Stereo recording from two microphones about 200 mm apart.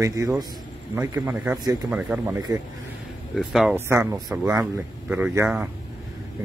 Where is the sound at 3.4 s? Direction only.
Centre (ahead or behind).